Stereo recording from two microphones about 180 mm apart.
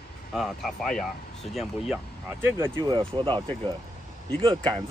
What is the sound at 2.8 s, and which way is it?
Speech, 25° right (ahead or behind).